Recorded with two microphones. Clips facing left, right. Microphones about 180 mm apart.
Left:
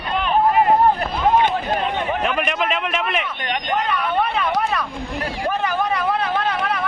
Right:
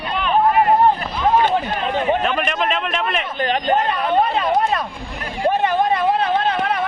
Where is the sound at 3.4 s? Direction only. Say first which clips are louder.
Right 5 dB; 35° right (ahead or behind).